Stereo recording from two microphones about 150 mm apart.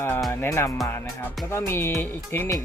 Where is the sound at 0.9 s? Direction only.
15° left (ahead or behind).